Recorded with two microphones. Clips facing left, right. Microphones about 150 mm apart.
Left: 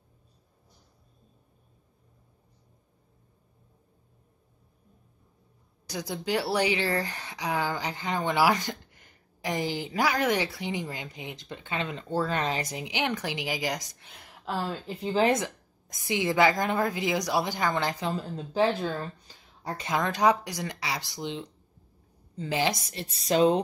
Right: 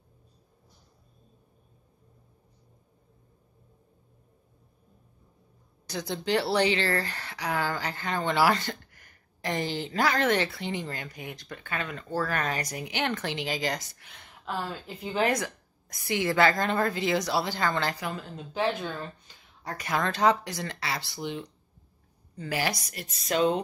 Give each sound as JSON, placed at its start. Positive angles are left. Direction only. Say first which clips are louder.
{"t": 5.9, "sound": "a woman's voice", "louder": "right 2 dB", "side_deg": 10}
{"t": 15.0, "sound": "speech", "louder": "left 3 dB", "side_deg": 30}
{"t": 15.4, "sound": "a woman's voice", "louder": "left 1 dB", "side_deg": 20}